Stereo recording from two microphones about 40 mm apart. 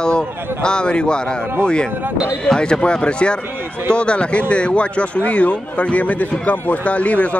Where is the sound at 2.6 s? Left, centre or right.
Left.